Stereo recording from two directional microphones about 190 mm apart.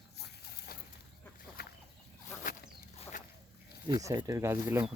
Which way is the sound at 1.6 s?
55° left (ahead or behind).